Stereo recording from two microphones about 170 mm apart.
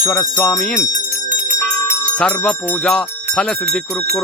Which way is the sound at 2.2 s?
5° left (ahead or behind).